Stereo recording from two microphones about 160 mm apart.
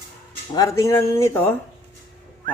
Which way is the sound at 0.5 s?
20° left (ahead or behind).